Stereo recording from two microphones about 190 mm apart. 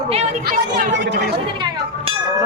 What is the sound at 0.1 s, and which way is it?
Speech, 35° right (ahead or behind).